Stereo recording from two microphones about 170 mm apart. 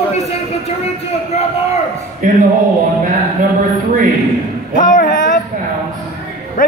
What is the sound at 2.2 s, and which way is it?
Speech, 50° right (ahead or behind).